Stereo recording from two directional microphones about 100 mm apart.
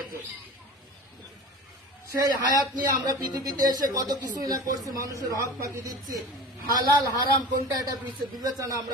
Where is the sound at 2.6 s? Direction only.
45° right (ahead or behind).